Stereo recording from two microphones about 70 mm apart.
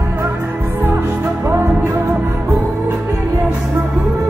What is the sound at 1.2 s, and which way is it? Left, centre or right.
Music, right.